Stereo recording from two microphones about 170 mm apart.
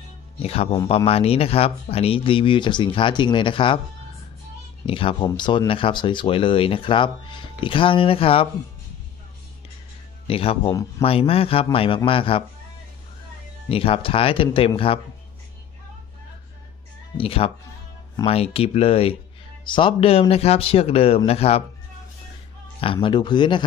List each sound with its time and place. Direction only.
0.4 s speech: 35° left (ahead or behind)
4.8 s speech: 30° left (ahead or behind)
10.2 s speech: 35° left (ahead or behind)
13.7 s speech: 35° left (ahead or behind)
17.2 s speech: 35° left (ahead or behind)
23.0 s speech: 25° left (ahead or behind)